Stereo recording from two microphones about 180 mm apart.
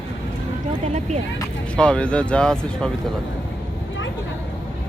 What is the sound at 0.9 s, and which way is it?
Speech, 40° right (ahead or behind).